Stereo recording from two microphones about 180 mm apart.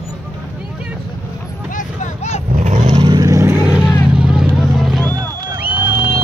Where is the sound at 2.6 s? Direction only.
40° right (ahead or behind).